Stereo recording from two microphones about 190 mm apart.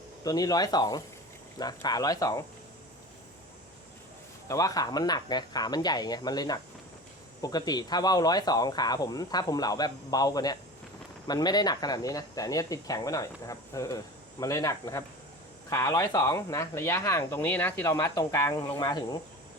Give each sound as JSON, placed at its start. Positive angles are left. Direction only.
{"t": 0.3, "sound": "speech", "side_deg": 20}
{"t": 4.4, "sound": "speech", "side_deg": 15}